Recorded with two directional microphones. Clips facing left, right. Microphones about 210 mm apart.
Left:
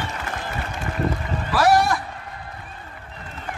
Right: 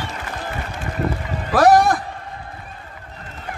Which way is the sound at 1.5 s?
45° right (ahead or behind).